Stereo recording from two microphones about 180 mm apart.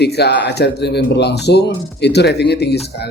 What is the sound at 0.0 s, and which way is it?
Music, 65° left (ahead or behind).